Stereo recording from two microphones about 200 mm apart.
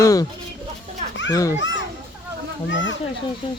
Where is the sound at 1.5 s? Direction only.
65° left (ahead or behind).